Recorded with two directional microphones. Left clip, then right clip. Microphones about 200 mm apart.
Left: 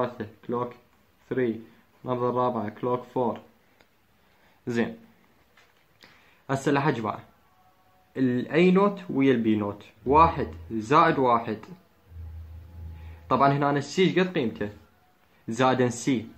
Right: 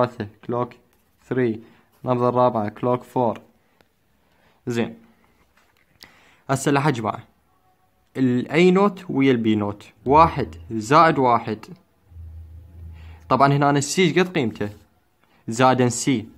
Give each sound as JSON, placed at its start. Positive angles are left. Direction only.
{"t": 0.0, "sound": "speech", "side_deg": -55}
{"t": 4.6, "sound": "speech", "side_deg": -30}
{"t": 5.9, "sound": "a sound", "side_deg": -40}
{"t": 8.1, "sound": "speech", "side_deg": -40}
{"t": 13.3, "sound": "speech", "side_deg": -40}
{"t": 15.4, "sound": "speech", "side_deg": -35}